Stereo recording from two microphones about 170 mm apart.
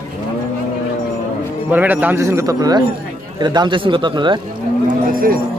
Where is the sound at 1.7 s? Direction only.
10° right (ahead or behind); by 4.4 s 25° right (ahead or behind).